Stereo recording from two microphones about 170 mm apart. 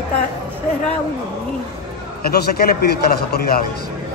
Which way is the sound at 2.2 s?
65° left (ahead or behind).